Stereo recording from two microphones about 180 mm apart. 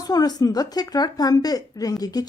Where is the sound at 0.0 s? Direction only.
20° left (ahead or behind).